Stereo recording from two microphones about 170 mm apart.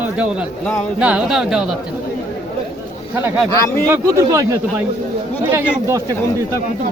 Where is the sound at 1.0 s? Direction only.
5° right (ahead or behind).